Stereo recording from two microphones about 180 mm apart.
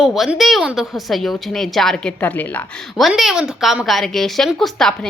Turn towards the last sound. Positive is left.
turn(degrees=0)  # may be behind; listen again after turning